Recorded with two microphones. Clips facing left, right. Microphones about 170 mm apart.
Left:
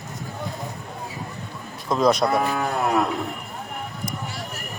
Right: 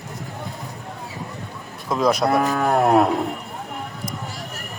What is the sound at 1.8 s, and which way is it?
Speech, 5° right (ahead or behind).